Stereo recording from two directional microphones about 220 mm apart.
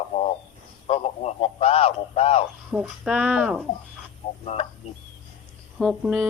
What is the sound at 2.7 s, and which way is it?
Speech, 5° right (ahead or behind).